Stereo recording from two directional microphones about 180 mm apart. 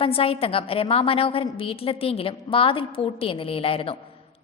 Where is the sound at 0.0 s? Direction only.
30° left (ahead or behind).